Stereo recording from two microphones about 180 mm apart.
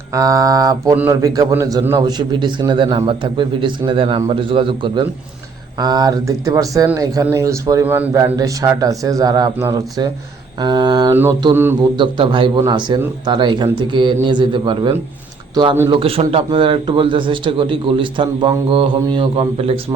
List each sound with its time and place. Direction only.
0.1 s a man's voice: 20° right (ahead or behind)
11.1 s mantra: 15° right (ahead or behind)
11.9 s a man's voice: 25° right (ahead or behind)